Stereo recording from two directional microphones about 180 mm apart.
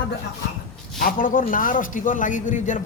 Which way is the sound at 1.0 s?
50° left (ahead or behind).